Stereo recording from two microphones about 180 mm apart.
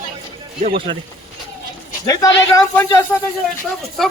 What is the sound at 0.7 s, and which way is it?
Speech, 30° right (ahead or behind).